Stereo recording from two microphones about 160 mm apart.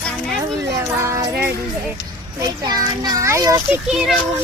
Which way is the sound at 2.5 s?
25° right (ahead or behind).